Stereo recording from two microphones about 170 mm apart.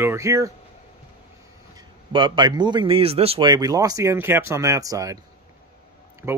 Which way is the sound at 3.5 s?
20° right (ahead or behind).